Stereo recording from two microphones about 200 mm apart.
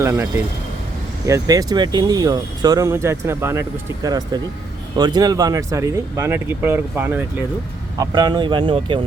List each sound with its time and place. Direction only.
0.0 s speech: 15° right (ahead or behind)
7.9 s speech: 20° right (ahead or behind)